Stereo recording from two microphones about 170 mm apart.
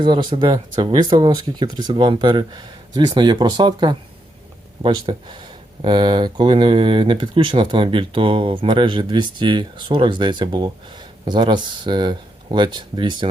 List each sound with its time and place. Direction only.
0.0 s speech: 25° right (ahead or behind)